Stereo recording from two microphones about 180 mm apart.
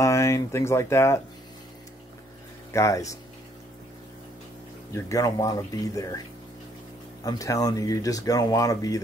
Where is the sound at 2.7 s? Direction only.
15° left (ahead or behind).